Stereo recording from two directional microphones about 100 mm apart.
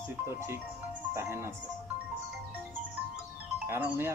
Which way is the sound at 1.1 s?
25° right (ahead or behind).